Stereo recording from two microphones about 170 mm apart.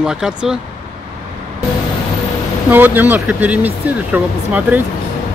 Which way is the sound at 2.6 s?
10° right (ahead or behind).